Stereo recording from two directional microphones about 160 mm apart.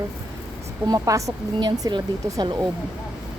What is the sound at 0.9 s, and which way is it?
Speech, 20° right (ahead or behind).